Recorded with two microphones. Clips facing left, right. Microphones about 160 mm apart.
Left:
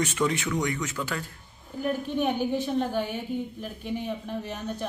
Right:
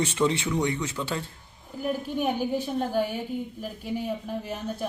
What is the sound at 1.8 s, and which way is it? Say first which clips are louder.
A woman's voice: left 1 dB; 10° right (ahead or behind).